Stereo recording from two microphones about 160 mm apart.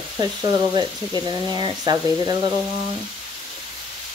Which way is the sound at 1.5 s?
25° right (ahead or behind).